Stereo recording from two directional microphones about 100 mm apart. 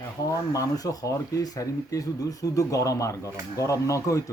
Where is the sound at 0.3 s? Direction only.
35° left (ahead or behind).